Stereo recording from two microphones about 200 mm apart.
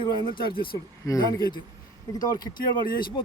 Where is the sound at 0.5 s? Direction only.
25° left (ahead or behind).